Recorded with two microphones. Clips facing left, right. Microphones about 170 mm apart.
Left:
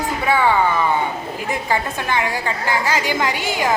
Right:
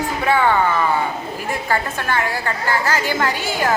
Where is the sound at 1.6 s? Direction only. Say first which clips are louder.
Even; 15° left (ahead or behind).